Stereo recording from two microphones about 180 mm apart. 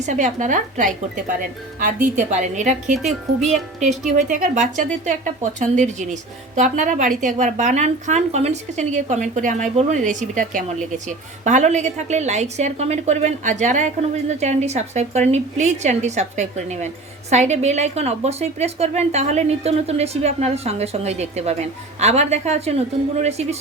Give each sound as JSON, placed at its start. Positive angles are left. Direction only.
{"t": 0.0, "sound": "a woman's voice", "side_deg": -45}